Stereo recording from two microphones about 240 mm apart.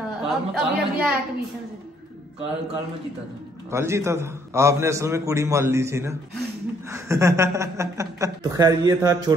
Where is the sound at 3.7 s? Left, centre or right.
Centre.